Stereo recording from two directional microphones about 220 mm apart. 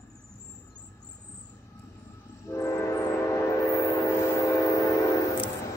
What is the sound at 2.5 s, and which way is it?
Train, 15° left (ahead or behind).